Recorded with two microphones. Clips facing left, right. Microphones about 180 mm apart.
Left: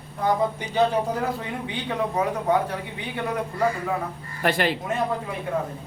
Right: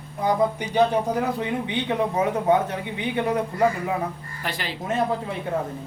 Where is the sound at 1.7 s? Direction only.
20° right (ahead or behind).